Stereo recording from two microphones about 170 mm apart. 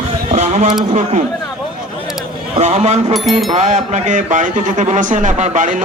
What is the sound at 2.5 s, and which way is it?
A man's voice, 40° right (ahead or behind).